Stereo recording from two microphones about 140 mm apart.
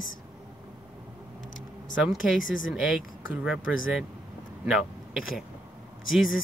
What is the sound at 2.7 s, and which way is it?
A man's voice, 5° right (ahead or behind).